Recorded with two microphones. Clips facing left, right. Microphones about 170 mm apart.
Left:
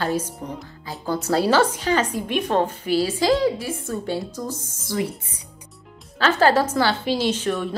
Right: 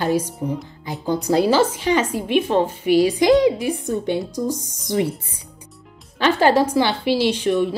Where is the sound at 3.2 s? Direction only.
20° right (ahead or behind).